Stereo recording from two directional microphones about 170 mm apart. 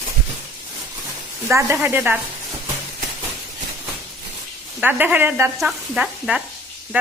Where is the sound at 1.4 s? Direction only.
15° right (ahead or behind).